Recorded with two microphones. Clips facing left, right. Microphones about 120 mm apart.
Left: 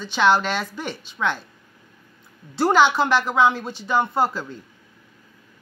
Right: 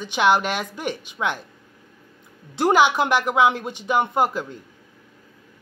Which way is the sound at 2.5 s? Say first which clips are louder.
Even; 15° right (ahead or behind).